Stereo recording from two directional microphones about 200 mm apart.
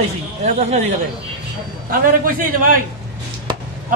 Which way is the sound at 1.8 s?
45° right (ahead or behind).